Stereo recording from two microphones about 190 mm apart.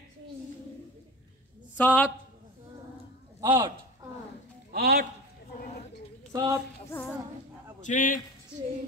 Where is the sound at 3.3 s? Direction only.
20° right (ahead or behind).